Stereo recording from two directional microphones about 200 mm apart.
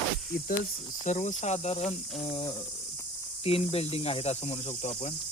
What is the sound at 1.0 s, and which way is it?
Speech, 35° left (ahead or behind).